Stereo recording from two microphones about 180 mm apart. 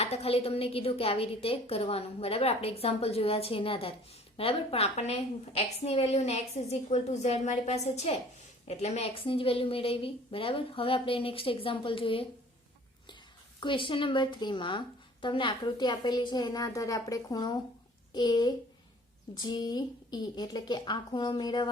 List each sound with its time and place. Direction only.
0.0 s a woman's voice: 35° left (ahead or behind)
13.6 s speech: 25° left (ahead or behind)